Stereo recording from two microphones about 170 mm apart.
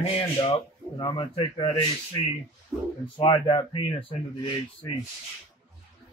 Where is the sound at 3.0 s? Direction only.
30° left (ahead or behind).